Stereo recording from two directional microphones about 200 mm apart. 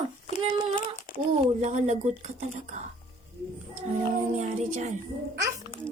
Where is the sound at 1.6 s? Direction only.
35° right (ahead or behind).